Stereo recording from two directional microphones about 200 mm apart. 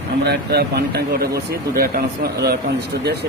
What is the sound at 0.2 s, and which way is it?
Speech, 55° right (ahead or behind).